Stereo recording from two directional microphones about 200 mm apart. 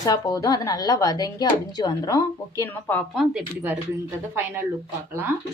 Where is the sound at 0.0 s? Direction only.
20° left (ahead or behind); by 4.6 s 10° right (ahead or behind).